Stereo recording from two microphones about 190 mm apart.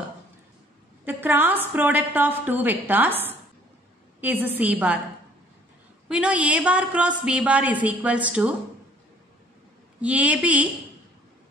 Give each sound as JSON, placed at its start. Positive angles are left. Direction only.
{"t": 1.0, "sound": "a woman's voice", "side_deg": -10}
{"t": 6.0, "sound": "a woman's voice", "side_deg": -5}
{"t": 10.0, "sound": "a woman's voice", "side_deg": -5}